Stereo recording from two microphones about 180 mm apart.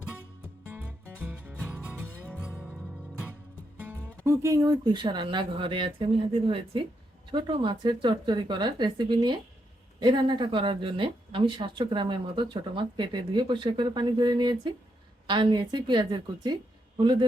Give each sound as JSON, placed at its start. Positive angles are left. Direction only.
{"t": 0.7, "sound": "music", "side_deg": -10}
{"t": 3.8, "sound": "speech", "side_deg": -15}
{"t": 7.3, "sound": "a woman's voice", "side_deg": -30}